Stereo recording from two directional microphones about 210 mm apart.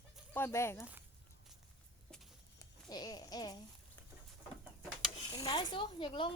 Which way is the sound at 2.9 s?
20° left (ahead or behind).